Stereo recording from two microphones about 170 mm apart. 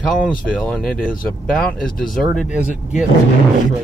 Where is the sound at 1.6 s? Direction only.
55° left (ahead or behind).